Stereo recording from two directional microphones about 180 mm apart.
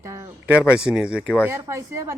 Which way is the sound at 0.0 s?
15° right (ahead or behind).